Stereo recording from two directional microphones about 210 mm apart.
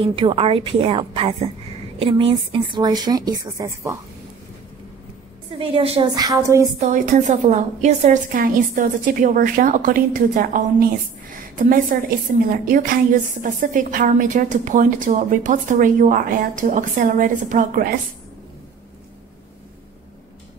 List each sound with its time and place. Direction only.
0.0 s a woman's voice: 25° right (ahead or behind)
5.5 s a woman's voice: 25° right (ahead or behind)
6.8 s a woman's voice: 35° right (ahead or behind)